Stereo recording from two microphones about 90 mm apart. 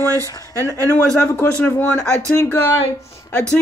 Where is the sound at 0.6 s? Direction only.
35° right (ahead or behind).